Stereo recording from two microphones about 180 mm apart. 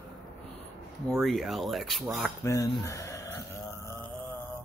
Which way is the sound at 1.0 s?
Centre (ahead or behind).